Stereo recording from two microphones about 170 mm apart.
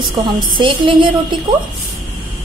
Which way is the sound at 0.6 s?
30° right (ahead or behind).